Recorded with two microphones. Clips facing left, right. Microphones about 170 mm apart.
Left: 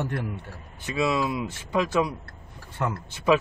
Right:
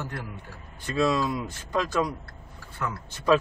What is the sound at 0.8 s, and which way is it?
Speech, 10° left (ahead or behind).